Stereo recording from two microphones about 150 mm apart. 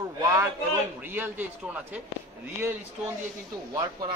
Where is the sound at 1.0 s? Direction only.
15° right (ahead or behind).